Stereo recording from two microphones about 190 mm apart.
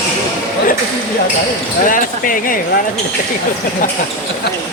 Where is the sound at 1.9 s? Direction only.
45° left (ahead or behind).